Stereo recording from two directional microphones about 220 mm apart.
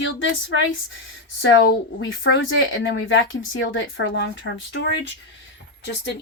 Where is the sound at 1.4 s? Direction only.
55° left (ahead or behind).